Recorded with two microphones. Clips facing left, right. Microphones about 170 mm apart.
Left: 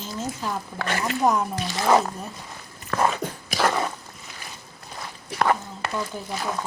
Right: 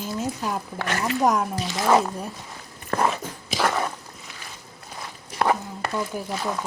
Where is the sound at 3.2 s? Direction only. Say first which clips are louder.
Left 5 dB; 65° left (ahead or behind).